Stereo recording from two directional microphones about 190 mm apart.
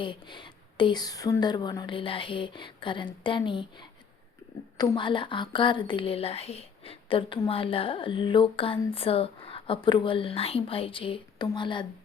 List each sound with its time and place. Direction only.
0.0 s a woman's voice: 25° left (ahead or behind)